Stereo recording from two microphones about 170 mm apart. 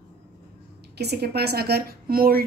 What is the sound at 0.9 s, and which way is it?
A woman's voice, 70° right (ahead or behind).